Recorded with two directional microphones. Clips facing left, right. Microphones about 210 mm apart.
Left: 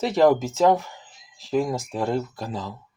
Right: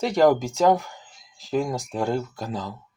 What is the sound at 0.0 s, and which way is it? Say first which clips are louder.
Speech: even; centre (ahead or behind).